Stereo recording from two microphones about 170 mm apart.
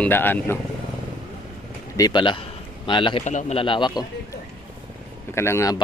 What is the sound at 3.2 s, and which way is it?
Speech, 45° left (ahead or behind).